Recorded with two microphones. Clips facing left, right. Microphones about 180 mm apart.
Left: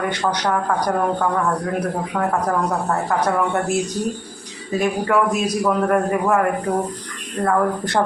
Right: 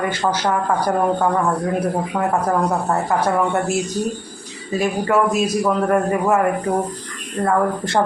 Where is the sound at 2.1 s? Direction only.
5° right (ahead or behind).